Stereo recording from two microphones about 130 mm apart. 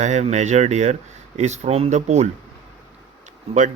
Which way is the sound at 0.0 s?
60° right (ahead or behind).